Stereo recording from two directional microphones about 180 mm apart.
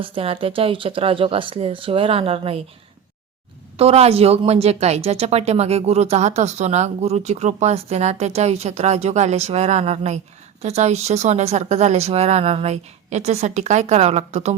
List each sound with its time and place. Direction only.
0.0 s speech: 30° right (ahead or behind)
3.8 s speech: 35° right (ahead or behind)